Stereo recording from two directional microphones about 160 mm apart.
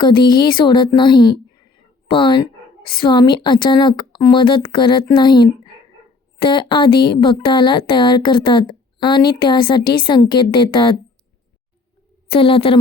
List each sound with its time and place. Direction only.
0.0 s a woman's voice: 30° left (ahead or behind)
12.3 s speech: 35° left (ahead or behind)